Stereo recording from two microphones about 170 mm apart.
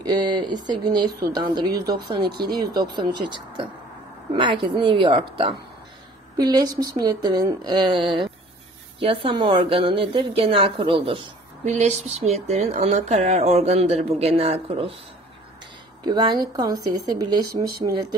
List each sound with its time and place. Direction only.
0.0 s a woman's voice: 25° right (ahead or behind)
11.7 s speech: 45° right (ahead or behind)
16.0 s a woman's voice: 25° right (ahead or behind)